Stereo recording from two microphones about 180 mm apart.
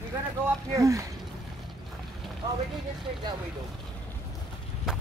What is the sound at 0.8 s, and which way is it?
Speech, 20° right (ahead or behind).